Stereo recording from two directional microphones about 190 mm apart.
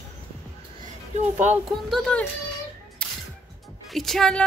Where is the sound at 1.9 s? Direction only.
5° left (ahead or behind).